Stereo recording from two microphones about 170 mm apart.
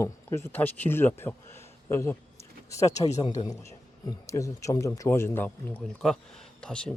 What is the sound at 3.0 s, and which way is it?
Speech, 40° left (ahead or behind).